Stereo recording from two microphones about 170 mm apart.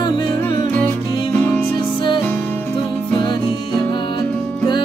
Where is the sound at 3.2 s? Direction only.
25° left (ahead or behind).